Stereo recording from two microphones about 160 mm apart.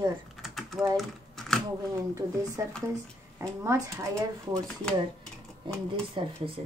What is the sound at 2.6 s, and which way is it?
Speech, 20° right (ahead or behind).